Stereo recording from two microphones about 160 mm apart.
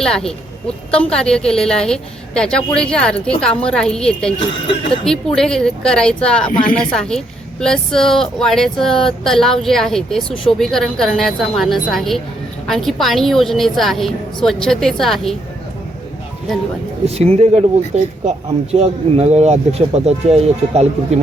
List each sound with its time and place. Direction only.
0.0 s a woman's voice: 5° left (ahead or behind)
17.1 s speech: 40° right (ahead or behind)